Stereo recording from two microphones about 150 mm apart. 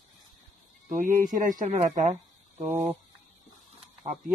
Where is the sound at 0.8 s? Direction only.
60° right (ahead or behind).